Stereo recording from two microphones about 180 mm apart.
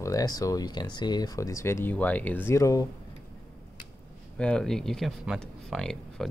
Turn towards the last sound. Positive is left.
turn(degrees=0)  # may be behind; listen again after turning